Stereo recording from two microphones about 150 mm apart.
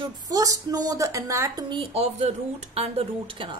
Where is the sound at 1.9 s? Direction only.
45° right (ahead or behind).